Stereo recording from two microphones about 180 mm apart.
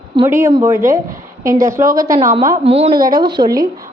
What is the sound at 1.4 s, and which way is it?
Speech, 15° right (ahead or behind).